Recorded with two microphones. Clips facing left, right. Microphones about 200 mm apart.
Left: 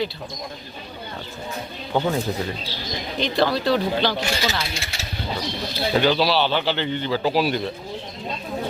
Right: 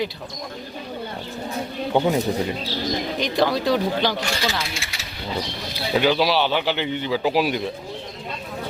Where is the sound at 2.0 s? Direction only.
20° right (ahead or behind).